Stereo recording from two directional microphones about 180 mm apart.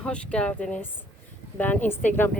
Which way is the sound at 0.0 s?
5° left (ahead or behind).